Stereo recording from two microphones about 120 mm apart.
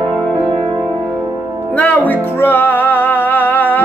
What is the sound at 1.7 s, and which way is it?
Music, 15° left (ahead or behind).